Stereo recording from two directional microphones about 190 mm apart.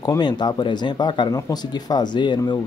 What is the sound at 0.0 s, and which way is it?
Speech, 20° left (ahead or behind).